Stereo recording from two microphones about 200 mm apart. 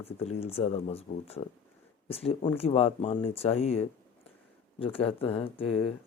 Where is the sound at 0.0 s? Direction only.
30° left (ahead or behind).